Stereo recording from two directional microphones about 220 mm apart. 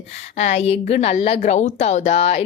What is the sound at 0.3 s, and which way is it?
A woman's voice, 30° left (ahead or behind).